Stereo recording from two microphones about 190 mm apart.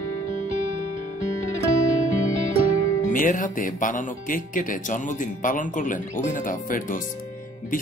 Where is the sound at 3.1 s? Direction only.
45° left (ahead or behind).